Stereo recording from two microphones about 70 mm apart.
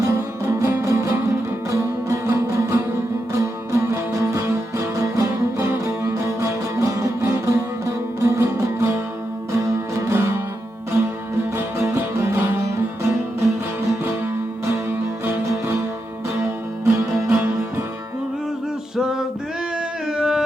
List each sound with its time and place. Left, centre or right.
0.0 s music: right
10.1 s music: right
11.5 s music: right
14.7 s music: right
16.8 s music: right
18.9 s male singing: centre
20.1 s music: centre